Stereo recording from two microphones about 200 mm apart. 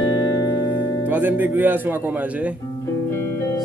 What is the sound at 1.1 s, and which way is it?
Speech, 10° right (ahead or behind).